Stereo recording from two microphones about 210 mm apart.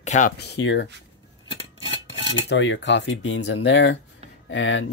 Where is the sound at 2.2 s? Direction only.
60° left (ahead or behind).